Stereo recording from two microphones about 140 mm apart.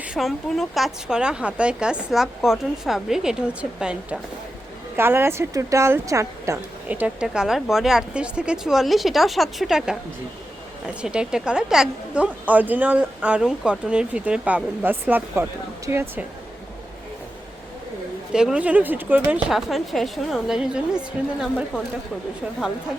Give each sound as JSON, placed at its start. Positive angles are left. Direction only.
{"t": 0.0, "sound": "a woman's voice", "side_deg": -5}
{"t": 6.8, "sound": "a woman's voice", "side_deg": -10}
{"t": 18.3, "sound": "a woman's voice", "side_deg": -5}